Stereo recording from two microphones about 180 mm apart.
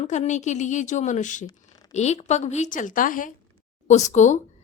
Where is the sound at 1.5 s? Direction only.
20° left (ahead or behind).